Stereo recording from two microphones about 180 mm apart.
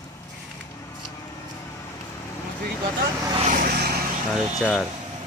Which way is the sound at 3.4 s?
50° right (ahead or behind).